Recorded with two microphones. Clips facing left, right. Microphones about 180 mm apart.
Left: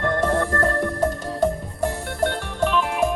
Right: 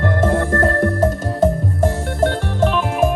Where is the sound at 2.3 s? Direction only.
40° right (ahead or behind).